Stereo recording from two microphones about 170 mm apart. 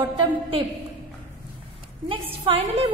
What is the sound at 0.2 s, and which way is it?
Speech, 30° right (ahead or behind).